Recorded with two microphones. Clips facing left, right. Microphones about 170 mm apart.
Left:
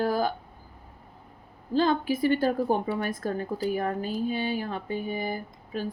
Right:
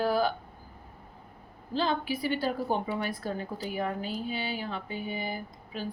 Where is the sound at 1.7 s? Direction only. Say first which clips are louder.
Left 5 dB; 45° left (ahead or behind).